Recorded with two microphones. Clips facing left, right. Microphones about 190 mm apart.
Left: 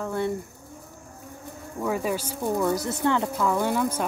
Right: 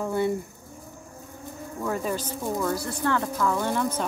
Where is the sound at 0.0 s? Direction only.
5° right (ahead or behind).